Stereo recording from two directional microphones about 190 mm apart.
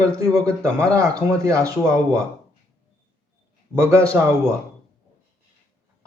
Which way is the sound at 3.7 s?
15° right (ahead or behind).